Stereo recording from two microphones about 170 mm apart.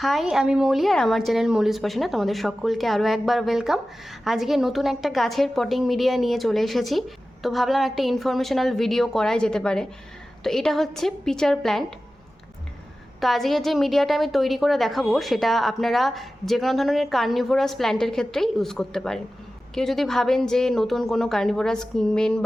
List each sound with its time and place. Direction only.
0.0 s a woman's voice: centre (ahead or behind)
13.1 s a woman's voice: centre (ahead or behind)